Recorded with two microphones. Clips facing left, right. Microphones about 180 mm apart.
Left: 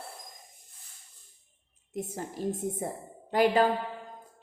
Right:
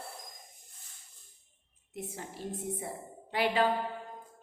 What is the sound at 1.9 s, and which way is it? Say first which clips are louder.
A woman's voice: left 6 dB; 45° left (ahead or behind).